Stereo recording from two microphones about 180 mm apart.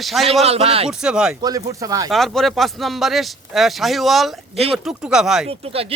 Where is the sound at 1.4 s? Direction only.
20° right (ahead or behind).